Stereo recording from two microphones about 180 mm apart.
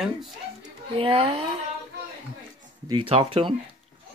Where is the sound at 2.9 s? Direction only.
30° right (ahead or behind).